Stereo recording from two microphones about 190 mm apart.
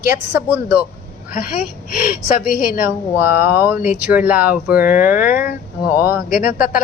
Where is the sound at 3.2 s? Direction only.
10° right (ahead or behind).